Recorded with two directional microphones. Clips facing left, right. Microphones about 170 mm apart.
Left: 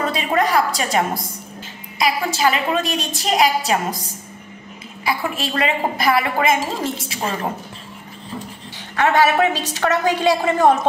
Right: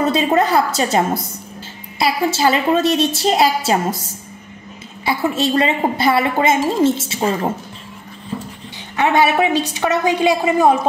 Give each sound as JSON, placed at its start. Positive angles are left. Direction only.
{"t": 0.0, "sound": "a woman's voice", "side_deg": -25}
{"t": 5.0, "sound": "a woman's voice", "side_deg": -25}
{"t": 8.9, "sound": "a woman's voice", "side_deg": -20}